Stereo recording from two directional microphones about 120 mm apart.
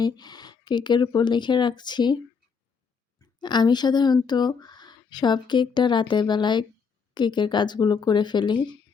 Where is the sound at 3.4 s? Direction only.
35° left (ahead or behind).